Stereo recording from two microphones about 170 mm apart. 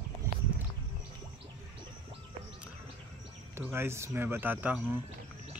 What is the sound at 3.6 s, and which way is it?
Speech, 15° right (ahead or behind).